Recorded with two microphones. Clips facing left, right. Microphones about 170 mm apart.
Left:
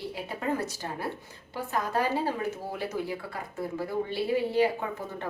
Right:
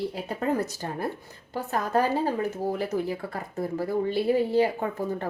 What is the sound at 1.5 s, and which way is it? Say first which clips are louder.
A woman's voice: right 4 dB; 45° right (ahead or behind).